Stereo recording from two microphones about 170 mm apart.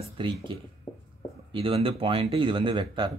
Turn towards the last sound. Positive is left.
turn(degrees=-30)  # may be behind; listen again after turning